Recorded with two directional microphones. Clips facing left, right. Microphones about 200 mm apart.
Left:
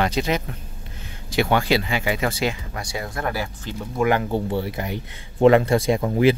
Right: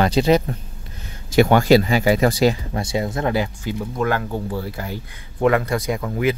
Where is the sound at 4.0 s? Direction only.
10° left (ahead or behind).